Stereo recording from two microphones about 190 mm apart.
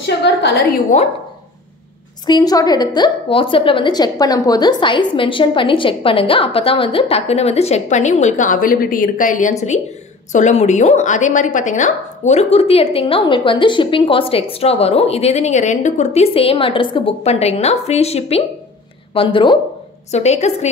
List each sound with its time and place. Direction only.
0.0 s a sound: 65° left (ahead or behind)
0.9 s a woman's voice: 35° left (ahead or behind)
2.2 s a woman's voice: 20° left (ahead or behind)
20.1 s a woman's voice: 35° left (ahead or behind)